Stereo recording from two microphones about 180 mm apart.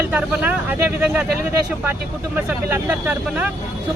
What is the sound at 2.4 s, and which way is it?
Speech, 10° right (ahead or behind).